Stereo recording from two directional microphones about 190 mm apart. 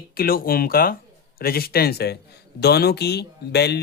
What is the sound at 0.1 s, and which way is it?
A woman's voice, 50° left (ahead or behind).